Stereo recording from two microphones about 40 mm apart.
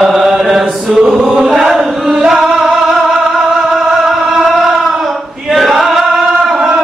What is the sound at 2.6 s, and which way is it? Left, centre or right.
Music, centre.